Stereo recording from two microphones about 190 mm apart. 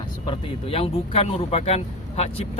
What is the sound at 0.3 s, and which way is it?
Speech, 30° left (ahead or behind).